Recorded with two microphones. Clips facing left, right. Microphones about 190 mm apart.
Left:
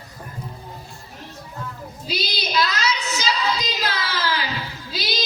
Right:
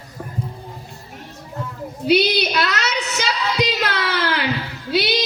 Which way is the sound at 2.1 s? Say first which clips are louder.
Right 12 dB; 65° right (ahead or behind).